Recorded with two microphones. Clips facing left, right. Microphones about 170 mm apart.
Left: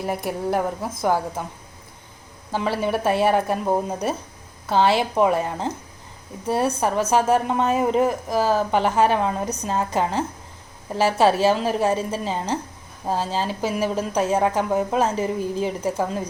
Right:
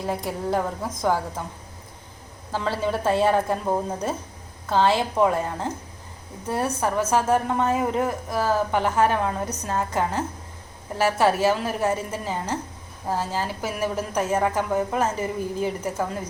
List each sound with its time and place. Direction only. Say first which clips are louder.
0.3 s speech: left 3 dB; 15° left (ahead or behind)
2.5 s a woman's voice: left 2 dB; 15° left (ahead or behind)